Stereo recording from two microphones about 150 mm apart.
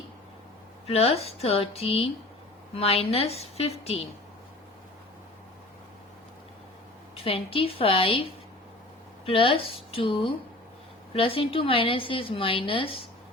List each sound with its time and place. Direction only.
0.9 s a woman's voice: 40° left (ahead or behind)
7.3 s a woman's voice: 40° left (ahead or behind)